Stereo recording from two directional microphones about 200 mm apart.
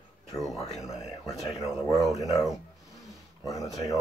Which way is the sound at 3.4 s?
15° left (ahead or behind).